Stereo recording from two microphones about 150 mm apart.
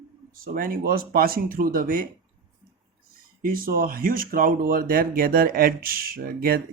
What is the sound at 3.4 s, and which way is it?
Speech, 70° right (ahead or behind).